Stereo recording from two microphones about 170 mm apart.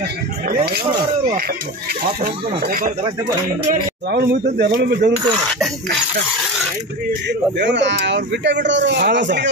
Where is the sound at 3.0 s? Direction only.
25° right (ahead or behind).